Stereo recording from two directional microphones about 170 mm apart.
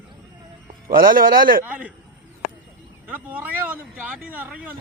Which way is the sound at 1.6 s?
10° right (ahead or behind).